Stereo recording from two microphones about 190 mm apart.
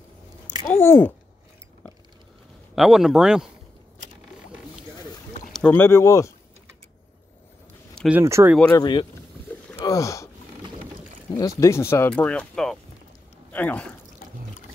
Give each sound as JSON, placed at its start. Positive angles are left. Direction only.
{"t": 0.6, "sound": "speech", "side_deg": 15}
{"t": 2.7, "sound": "speech", "side_deg": 0}
{"t": 5.5, "sound": "speech", "side_deg": 5}
{"t": 8.1, "sound": "speech", "side_deg": -15}
{"t": 8.7, "sound": "speech", "side_deg": 25}
{"t": 9.8, "sound": "a sound", "side_deg": 15}
{"t": 11.3, "sound": "speech", "side_deg": 15}